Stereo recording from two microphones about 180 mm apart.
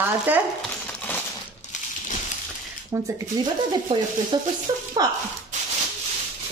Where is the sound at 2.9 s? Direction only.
15° right (ahead or behind).